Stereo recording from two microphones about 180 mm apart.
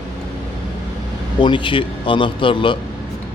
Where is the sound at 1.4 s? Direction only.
25° left (ahead or behind).